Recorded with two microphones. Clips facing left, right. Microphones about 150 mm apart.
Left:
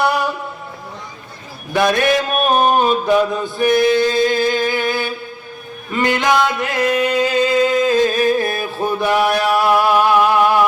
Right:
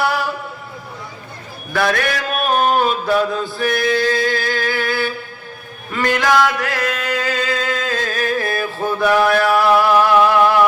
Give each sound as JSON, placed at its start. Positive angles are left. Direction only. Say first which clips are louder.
{"t": 0.0, "sound": "a sound", "louder": "left 2 dB", "side_deg": 20}
{"t": 1.7, "sound": "mantra", "louder": "left 4 dB", "side_deg": 20}
{"t": 5.9, "sound": "music", "louder": "left 1 dB", "side_deg": 20}